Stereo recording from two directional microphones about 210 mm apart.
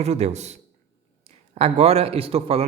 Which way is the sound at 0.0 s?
30° right (ahead or behind).